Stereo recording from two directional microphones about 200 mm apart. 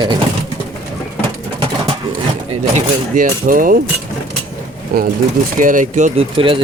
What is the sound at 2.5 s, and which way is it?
Speech, 40° right (ahead or behind).